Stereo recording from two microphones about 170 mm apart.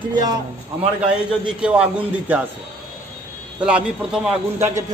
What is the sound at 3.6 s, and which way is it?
Speech, 5° right (ahead or behind).